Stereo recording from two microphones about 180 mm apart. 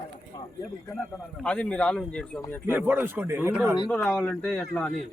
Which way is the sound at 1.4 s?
5° left (ahead or behind).